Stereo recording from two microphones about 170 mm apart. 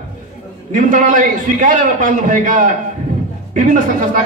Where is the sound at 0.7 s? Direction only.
50° right (ahead or behind).